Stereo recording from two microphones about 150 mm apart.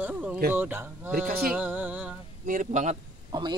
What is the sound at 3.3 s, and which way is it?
Speech, 30° right (ahead or behind).